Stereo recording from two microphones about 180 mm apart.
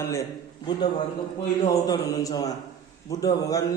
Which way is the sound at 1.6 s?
20° left (ahead or behind).